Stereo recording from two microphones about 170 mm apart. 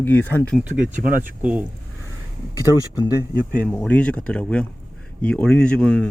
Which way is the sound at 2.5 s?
25° left (ahead or behind).